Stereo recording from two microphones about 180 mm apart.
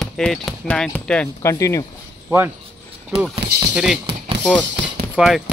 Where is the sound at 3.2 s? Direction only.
Centre (ahead or behind).